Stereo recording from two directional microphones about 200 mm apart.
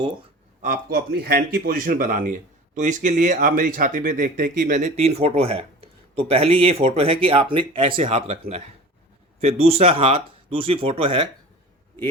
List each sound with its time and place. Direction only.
0.6 s speech: 45° right (ahead or behind); by 11.3 s 25° right (ahead or behind)